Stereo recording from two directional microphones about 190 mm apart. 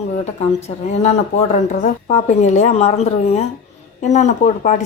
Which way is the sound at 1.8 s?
35° left (ahead or behind).